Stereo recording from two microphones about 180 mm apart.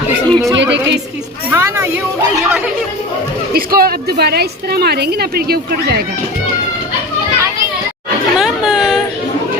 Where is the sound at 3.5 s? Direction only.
55° right (ahead or behind).